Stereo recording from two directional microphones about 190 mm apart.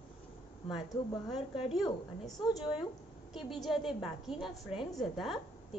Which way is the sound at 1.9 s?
20° left (ahead or behind).